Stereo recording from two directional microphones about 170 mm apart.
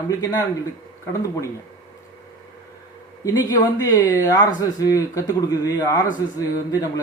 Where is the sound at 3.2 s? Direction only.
20° left (ahead or behind).